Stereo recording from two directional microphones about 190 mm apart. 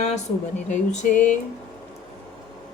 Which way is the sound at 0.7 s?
45° left (ahead or behind).